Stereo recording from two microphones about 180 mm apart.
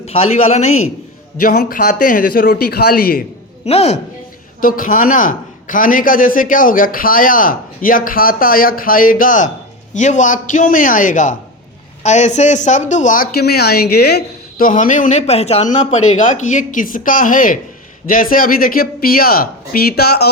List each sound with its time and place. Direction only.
0.0 s a man's voice: 35° left (ahead or behind)
1.4 s a man's voice: 50° left (ahead or behind)
3.7 s a man's voice: 35° left (ahead or behind)
4.6 s a man's voice: 50° left (ahead or behind); by 14.7 s 65° left (ahead or behind)
14.7 s a man's voice: 45° left (ahead or behind); by 20.3 s 60° left (ahead or behind)